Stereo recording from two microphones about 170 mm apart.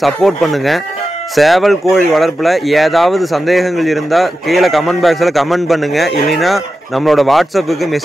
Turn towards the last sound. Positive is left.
turn(degrees=0)  # may be behind; listen again after turning